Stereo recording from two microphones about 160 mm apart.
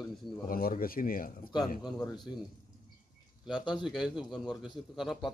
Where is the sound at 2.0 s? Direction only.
25° left (ahead or behind).